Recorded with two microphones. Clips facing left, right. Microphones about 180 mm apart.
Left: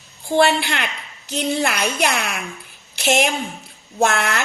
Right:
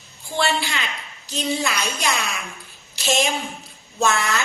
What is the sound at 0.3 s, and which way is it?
A woman's voice, 60° left (ahead or behind).